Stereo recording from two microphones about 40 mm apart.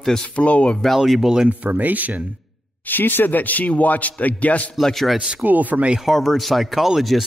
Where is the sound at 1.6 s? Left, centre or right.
Right.